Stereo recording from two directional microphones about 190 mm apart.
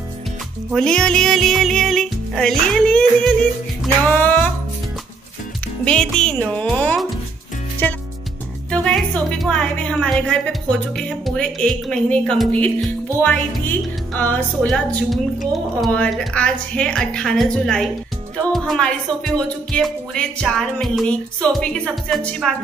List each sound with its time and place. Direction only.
0.7 s speech: 5° left (ahead or behind)
4.1 s music: 10° left (ahead or behind)
5.9 s speech: 5° left (ahead or behind)
8.6 s a woman's voice: 5° left (ahead or behind)